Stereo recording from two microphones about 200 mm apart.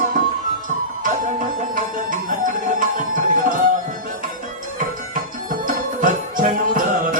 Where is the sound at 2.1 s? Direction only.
45° right (ahead or behind).